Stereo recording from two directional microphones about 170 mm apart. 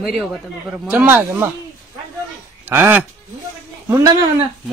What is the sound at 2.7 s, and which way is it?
A man's voice, 10° right (ahead or behind).